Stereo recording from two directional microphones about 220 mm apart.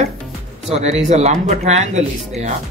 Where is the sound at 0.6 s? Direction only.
30° right (ahead or behind).